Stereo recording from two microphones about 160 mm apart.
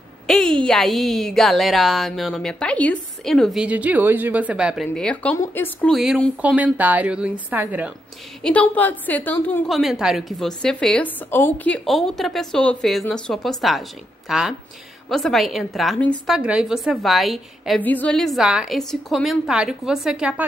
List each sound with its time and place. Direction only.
0.3 s a woman's voice: 5° left (ahead or behind)
5.9 s a woman's voice: centre (ahead or behind)
8.4 s a woman's voice: 10° left (ahead or behind)
9.7 s a woman's voice: centre (ahead or behind)